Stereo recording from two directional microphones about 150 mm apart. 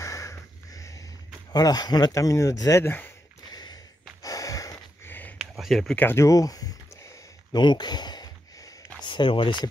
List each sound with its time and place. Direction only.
0.0 s snort: 20° left (ahead or behind)
1.5 s speech: 25° left (ahead or behind)
3.4 s a sound: 25° left (ahead or behind)
4.2 s snort: 25° left (ahead or behind)
5.4 s speech: centre (ahead or behind)
6.0 s a sound: 20° left (ahead or behind)
7.5 s speech: 30° left (ahead or behind)